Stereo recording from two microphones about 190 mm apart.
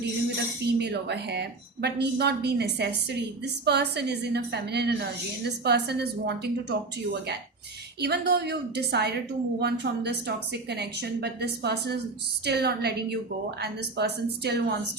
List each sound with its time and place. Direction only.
0.6 s a woman's voice: 60° right (ahead or behind)